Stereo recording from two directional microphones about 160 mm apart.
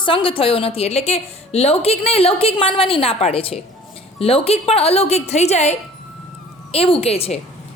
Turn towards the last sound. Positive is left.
turn(degrees=40)  # may be behind; listen again after turning